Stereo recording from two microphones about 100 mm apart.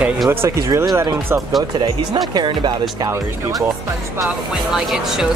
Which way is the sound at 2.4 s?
45° right (ahead or behind).